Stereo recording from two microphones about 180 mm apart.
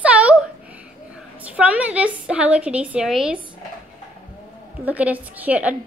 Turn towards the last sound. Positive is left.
turn(degrees=-10)  # may be behind; listen again after turning